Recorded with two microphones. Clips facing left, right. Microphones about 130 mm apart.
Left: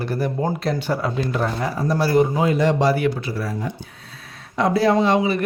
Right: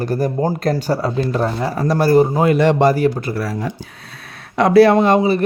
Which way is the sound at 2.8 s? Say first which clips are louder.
Right 4 dB; 45° right (ahead or behind).